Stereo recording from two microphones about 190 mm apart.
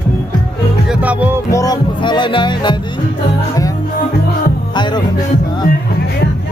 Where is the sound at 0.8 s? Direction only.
10° right (ahead or behind).